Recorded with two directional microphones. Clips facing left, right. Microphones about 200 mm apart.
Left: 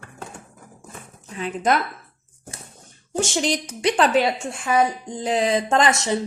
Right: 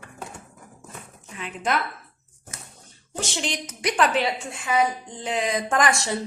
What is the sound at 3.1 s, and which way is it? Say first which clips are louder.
Speech: left 7 dB; 45° left (ahead or behind).